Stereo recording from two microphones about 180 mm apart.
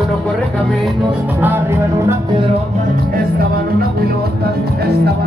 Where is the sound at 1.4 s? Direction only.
10° right (ahead or behind).